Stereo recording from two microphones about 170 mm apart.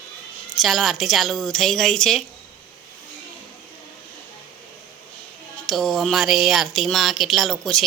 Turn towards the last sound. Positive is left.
turn(degrees=0)  # may be behind; listen again after turning